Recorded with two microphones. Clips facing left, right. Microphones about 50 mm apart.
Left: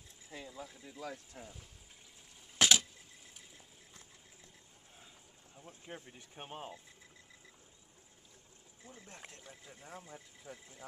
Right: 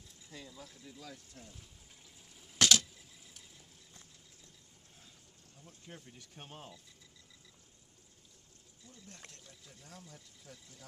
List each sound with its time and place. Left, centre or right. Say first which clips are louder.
0.3 s speech: left 4 dB; centre
1.0 s speech: left 10 dB; left
1.4 s speech: left 3 dB; centre
2.6 s a sound: even; centre
5.6 s speech: left 4 dB; left
8.8 s speech: left 3 dB; left
9.1 s speech: left 3 dB; centre